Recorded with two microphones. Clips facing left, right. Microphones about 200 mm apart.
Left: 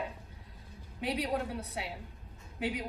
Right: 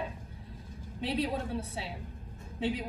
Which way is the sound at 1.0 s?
25° right (ahead or behind).